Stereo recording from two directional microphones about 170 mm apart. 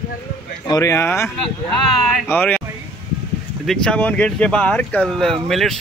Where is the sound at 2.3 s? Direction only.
10° left (ahead or behind).